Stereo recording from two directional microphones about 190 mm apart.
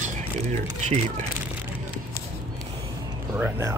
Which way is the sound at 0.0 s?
35° right (ahead or behind).